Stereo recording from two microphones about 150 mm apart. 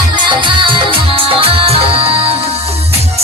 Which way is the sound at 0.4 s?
35° right (ahead or behind).